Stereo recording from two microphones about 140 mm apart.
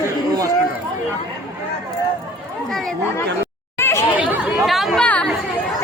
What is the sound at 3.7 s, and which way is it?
Chatter, 15° left (ahead or behind).